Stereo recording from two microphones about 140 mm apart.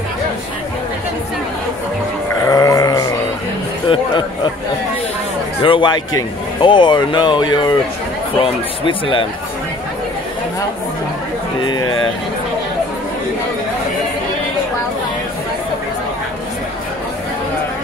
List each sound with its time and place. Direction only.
2.4 s sheep: 25° left (ahead or behind)
5.6 s speech: 35° left (ahead or behind)